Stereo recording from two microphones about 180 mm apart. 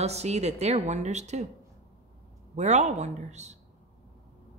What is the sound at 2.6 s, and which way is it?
Speech, 40° right (ahead or behind).